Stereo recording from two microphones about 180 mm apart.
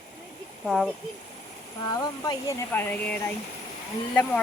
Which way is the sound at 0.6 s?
Centre (ahead or behind).